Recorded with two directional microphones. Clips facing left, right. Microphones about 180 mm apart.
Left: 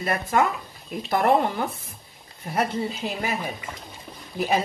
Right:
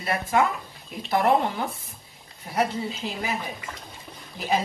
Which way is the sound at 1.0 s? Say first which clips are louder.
Left 1 dB; 50° left (ahead or behind).